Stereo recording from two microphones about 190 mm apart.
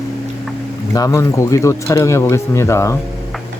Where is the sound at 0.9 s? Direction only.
20° left (ahead or behind).